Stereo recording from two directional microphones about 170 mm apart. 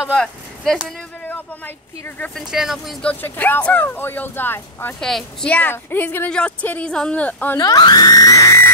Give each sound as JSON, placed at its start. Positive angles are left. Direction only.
{"t": 0.0, "sound": "speech", "side_deg": 5}
{"t": 2.0, "sound": "a woman's voice", "side_deg": 10}
{"t": 2.5, "sound": "a woman's voice", "side_deg": 0}
{"t": 7.5, "sound": "speech", "side_deg": 25}